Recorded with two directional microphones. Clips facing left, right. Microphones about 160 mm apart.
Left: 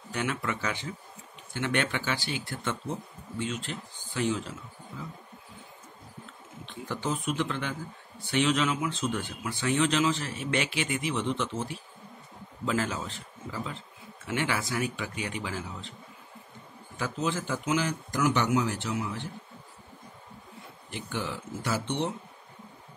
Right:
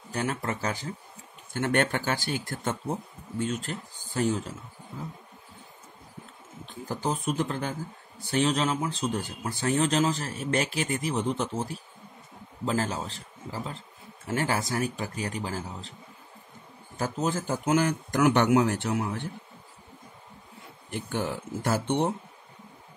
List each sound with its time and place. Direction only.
0.1 s speech: 40° right (ahead or behind)
6.6 s a man's voice: 40° right (ahead or behind)
16.9 s speech: 45° right (ahead or behind)
20.9 s speech: 50° right (ahead or behind)